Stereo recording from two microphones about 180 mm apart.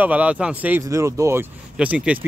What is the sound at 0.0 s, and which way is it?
Speech, 10° right (ahead or behind).